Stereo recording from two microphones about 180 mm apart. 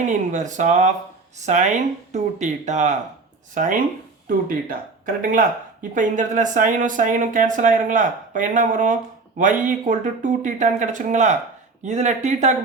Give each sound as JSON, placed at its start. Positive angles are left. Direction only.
{"t": 0.1, "sound": "speech", "side_deg": -45}
{"t": 5.0, "sound": "speech", "side_deg": -50}